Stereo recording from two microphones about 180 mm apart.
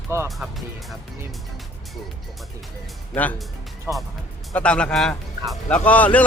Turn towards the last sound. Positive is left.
turn(degrees=10)  # may be behind; listen again after turning